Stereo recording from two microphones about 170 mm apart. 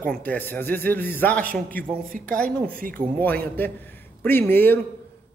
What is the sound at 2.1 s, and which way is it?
Speech, 50° right (ahead or behind).